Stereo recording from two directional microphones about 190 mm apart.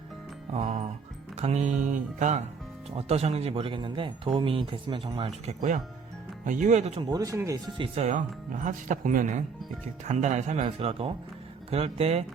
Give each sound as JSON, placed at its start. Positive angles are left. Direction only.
{"t": 0.5, "sound": "speech", "side_deg": -35}
{"t": 6.4, "sound": "speech", "side_deg": -40}
{"t": 7.0, "sound": "speech", "side_deg": -20}
{"t": 7.9, "sound": "speech", "side_deg": -40}